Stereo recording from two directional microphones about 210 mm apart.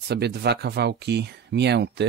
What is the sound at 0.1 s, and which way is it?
Speech, 50° right (ahead or behind).